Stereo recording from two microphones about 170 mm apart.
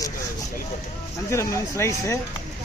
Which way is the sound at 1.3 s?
15° left (ahead or behind).